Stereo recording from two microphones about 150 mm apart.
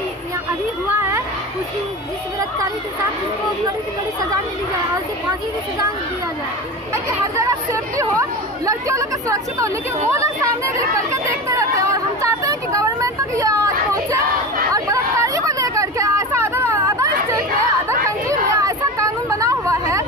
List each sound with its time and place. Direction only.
6.9 s speech: 20° right (ahead or behind)
14.7 s hubbub: 20° right (ahead or behind)